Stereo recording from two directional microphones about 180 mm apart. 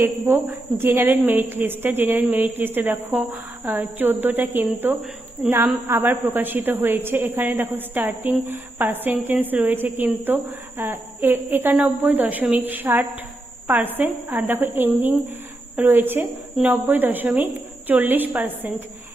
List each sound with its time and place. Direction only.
0.0 s a woman's voice: 10° right (ahead or behind)